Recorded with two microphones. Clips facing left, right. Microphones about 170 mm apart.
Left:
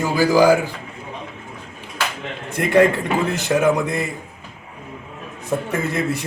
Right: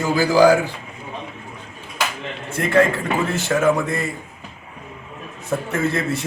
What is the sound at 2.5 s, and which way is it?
A man's voice, 15° left (ahead or behind).